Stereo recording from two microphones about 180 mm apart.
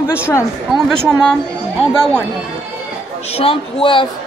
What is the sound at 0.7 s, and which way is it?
A woman's voice, centre (ahead or behind).